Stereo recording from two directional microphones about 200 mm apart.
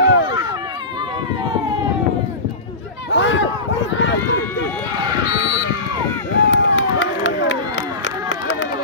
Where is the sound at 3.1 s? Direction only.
65° left (ahead or behind).